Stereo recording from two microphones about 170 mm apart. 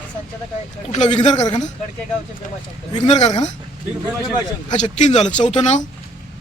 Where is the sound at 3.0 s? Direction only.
40° left (ahead or behind).